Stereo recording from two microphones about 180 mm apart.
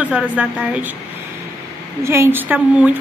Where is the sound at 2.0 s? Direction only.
15° right (ahead or behind).